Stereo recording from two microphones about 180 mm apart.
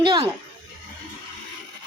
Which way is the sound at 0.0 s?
30° right (ahead or behind).